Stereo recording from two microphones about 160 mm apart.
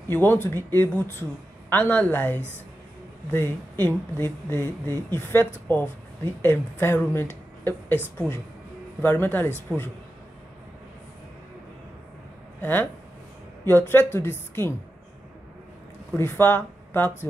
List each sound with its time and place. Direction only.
0.1 s speech: 15° left (ahead or behind)
12.5 s speech: 10° left (ahead or behind)
16.2 s speech: 15° left (ahead or behind)